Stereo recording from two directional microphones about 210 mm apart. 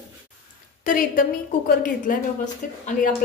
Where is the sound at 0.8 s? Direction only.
40° left (ahead or behind).